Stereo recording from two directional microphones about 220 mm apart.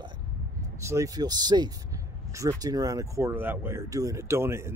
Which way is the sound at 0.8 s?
15° right (ahead or behind).